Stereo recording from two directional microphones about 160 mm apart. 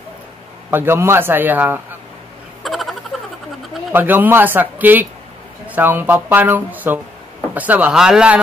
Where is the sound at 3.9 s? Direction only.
10° right (ahead or behind).